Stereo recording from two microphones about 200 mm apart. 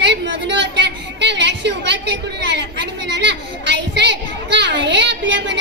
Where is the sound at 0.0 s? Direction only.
60° right (ahead or behind).